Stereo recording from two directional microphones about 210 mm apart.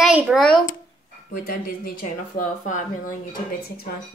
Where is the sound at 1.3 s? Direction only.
45° left (ahead or behind).